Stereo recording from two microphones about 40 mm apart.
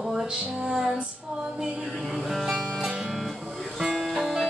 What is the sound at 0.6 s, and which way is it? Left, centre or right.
Music, centre.